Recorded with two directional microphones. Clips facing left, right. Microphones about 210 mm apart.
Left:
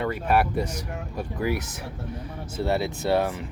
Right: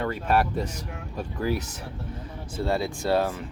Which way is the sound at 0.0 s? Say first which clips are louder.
Left 1 dB; 10° left (ahead or behind).